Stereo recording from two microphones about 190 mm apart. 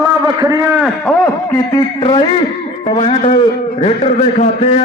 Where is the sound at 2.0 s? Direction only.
25° left (ahead or behind); by 4.7 s 40° left (ahead or behind).